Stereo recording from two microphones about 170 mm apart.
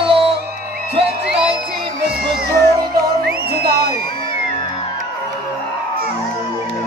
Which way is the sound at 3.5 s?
65° right (ahead or behind).